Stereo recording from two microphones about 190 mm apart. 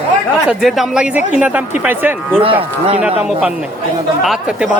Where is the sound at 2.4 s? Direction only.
30° right (ahead or behind).